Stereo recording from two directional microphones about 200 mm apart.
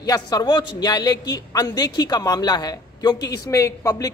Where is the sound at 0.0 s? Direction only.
20° left (ahead or behind).